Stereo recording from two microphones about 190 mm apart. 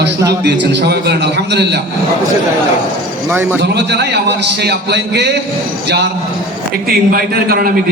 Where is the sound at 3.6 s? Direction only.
60° right (ahead or behind).